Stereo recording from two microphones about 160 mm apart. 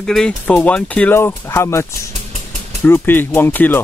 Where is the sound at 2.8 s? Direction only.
15° left (ahead or behind).